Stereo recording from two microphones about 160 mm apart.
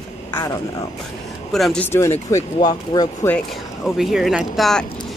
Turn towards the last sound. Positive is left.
turn(degrees=0)  # may be behind; listen again after turning